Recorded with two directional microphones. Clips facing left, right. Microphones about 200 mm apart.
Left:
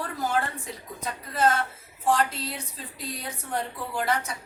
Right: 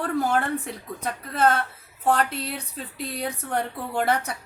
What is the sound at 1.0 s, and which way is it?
A woman's voice, 60° right (ahead or behind).